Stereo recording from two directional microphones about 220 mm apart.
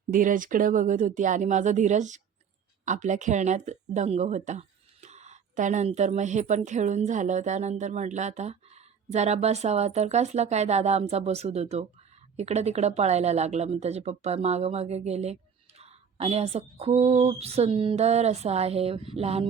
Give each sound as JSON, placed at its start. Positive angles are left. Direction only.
{"t": 0.1, "sound": "speech", "side_deg": -35}